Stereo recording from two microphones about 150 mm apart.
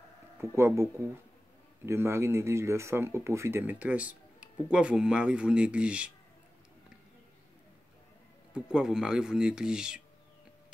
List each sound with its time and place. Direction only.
0.4 s speech: 15° right (ahead or behind)
1.9 s speech: 15° right (ahead or behind)
8.5 s speech: 5° right (ahead or behind)